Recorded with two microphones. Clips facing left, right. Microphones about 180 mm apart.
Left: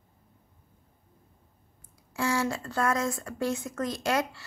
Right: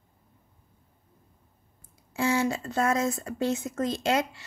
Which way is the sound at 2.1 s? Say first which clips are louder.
Right 3 dB; 25° right (ahead or behind).